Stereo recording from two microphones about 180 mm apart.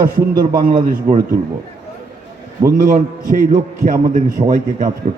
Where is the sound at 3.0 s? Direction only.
45° right (ahead or behind).